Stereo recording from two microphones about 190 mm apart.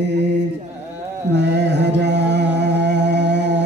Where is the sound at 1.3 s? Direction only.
65° right (ahead or behind).